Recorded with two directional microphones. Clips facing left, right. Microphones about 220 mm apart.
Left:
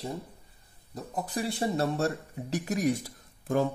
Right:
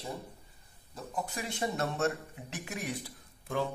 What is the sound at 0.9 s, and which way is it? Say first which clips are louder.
Speech: left 5 dB; 35° left (ahead or behind).